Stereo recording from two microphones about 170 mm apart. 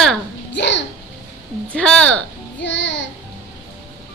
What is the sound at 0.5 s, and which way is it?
Child singing, 90° left.